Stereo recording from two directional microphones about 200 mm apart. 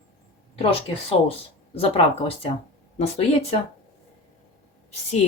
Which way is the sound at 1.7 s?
30° left (ahead or behind).